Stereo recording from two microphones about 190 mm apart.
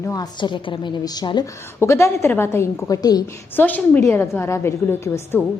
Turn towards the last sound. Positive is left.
turn(degrees=15)  # may be behind; listen again after turning